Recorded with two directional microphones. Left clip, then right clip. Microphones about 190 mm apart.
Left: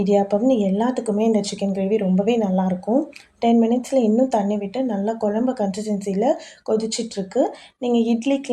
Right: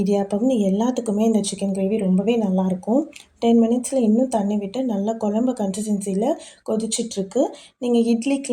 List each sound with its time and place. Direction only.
0.0 s speech: 25° right (ahead or behind)